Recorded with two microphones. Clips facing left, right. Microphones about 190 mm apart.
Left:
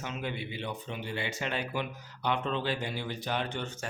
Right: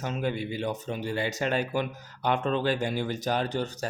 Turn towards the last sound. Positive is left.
turn(degrees=-35)  # may be behind; listen again after turning